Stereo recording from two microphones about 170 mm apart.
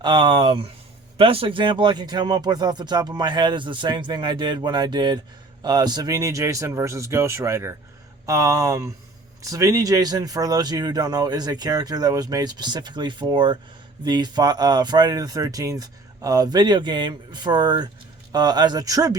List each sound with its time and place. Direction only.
0.0 s speech: 30° right (ahead or behind)